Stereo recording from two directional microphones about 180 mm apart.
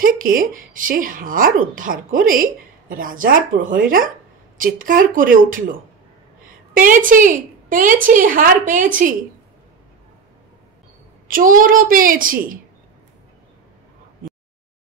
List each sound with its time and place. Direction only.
0.0 s speech: 50° right (ahead or behind)
11.2 s speech: 50° right (ahead or behind)